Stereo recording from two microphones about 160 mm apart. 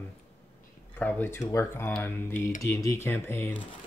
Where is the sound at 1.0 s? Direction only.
15° left (ahead or behind).